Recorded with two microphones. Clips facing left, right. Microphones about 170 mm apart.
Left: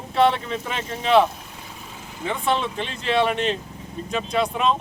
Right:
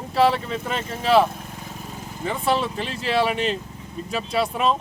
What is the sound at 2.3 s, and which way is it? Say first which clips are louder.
Speech: right 1 dB; 5° right (ahead or behind).